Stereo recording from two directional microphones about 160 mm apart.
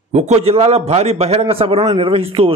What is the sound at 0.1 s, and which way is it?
A man's voice, 45° right (ahead or behind).